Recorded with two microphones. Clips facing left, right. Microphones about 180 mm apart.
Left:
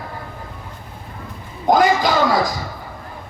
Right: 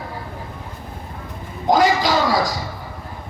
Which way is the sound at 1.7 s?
55° left (ahead or behind).